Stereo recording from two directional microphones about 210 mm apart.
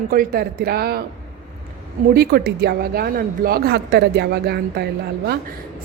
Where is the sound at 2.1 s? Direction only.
50° right (ahead or behind).